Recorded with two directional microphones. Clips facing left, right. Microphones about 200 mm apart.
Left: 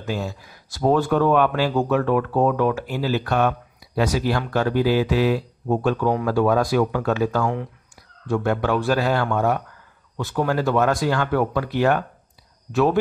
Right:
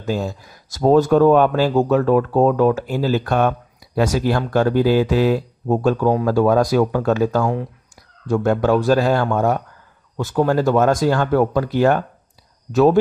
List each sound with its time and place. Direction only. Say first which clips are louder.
0.0 s speech: right 4 dB; 45° right (ahead or behind)